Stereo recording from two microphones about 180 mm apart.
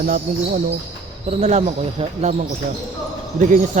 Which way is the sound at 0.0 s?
50° right (ahead or behind).